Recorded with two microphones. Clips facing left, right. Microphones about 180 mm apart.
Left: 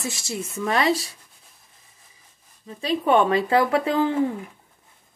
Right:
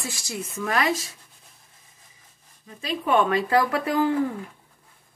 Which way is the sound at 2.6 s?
35° left (ahead or behind).